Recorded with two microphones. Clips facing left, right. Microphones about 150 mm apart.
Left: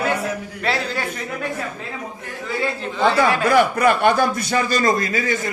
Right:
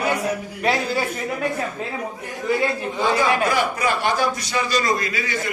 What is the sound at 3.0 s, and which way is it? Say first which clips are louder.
A man's voice: left 3 dB; 60° left (ahead or behind).